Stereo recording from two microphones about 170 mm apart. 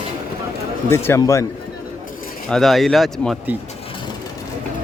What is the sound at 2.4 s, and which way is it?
Speech, centre (ahead or behind).